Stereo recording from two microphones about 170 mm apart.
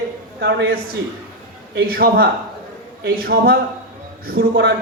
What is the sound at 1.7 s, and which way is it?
A man's voice, 65° right (ahead or behind).